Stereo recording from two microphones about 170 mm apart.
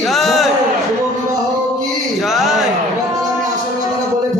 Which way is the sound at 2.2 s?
Centre (ahead or behind).